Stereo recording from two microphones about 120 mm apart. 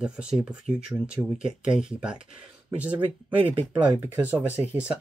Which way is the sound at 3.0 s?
45° right (ahead or behind).